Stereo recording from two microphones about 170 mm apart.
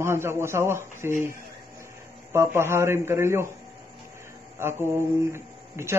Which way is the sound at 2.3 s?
15° right (ahead or behind).